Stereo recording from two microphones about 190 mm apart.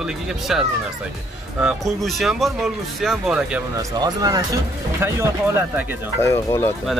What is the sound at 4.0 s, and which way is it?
Speech, 20° right (ahead or behind).